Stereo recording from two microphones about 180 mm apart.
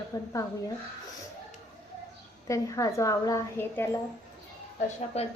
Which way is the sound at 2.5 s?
20° left (ahead or behind).